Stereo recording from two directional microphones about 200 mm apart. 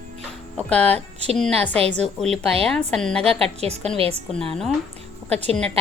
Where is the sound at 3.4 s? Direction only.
30° right (ahead or behind).